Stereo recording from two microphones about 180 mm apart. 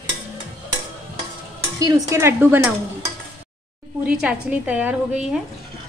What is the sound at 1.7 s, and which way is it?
A woman's voice, 20° right (ahead or behind).